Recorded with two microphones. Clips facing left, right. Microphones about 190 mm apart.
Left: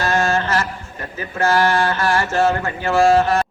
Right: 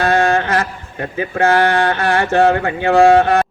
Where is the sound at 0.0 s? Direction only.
60° right (ahead or behind).